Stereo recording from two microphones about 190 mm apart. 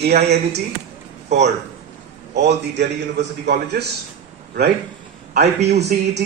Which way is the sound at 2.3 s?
65° right (ahead or behind).